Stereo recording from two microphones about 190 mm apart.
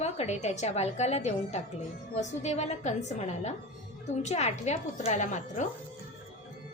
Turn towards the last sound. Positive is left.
turn(degrees=40)  # may be behind; listen again after turning